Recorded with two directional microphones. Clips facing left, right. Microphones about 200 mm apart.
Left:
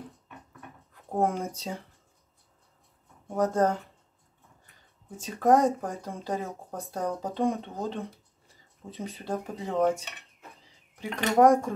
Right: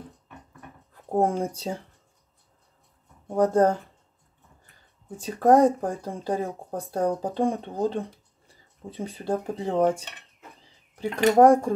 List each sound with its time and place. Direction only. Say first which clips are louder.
1.1 s speech: right 4 dB; 30° right (ahead or behind)
3.3 s speech: right 5 dB; 30° right (ahead or behind)
5.1 s speech: right 4 dB; 30° right (ahead or behind)